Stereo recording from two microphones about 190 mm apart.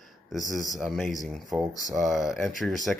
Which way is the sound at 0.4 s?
45° right (ahead or behind).